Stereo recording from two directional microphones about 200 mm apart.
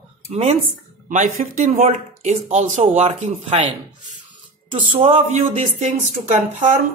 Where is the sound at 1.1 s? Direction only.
40° right (ahead or behind).